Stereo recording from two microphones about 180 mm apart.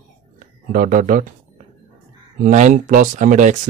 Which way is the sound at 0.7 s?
45° right (ahead or behind).